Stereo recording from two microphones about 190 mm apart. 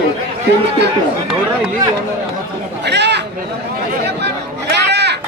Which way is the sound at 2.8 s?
65° right (ahead or behind).